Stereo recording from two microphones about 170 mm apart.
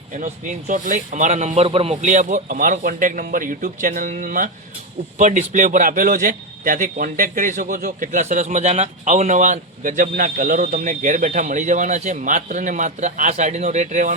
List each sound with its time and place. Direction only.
0.7 s speech: 50° right (ahead or behind)